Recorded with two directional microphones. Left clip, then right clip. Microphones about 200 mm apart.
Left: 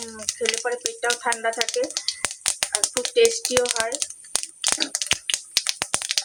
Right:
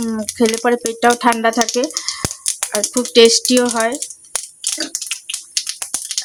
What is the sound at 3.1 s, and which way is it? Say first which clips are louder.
Speech: right 9 dB; 55° right (ahead or behind).